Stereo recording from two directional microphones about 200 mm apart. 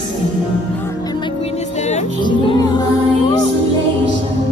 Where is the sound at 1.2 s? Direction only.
30° left (ahead or behind).